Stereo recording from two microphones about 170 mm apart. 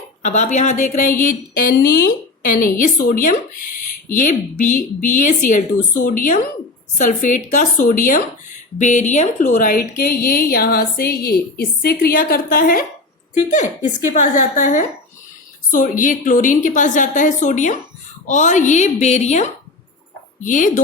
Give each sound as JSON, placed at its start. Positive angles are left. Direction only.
{"t": 0.2, "sound": "a woman's voice", "side_deg": 45}
{"t": 9.9, "sound": "a woman's voice", "side_deg": 65}